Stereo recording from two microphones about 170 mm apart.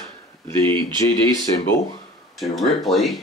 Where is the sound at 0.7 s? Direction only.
15° left (ahead or behind).